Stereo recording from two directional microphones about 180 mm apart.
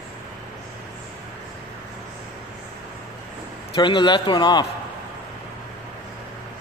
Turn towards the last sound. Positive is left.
turn(degrees=25)  # may be behind; listen again after turning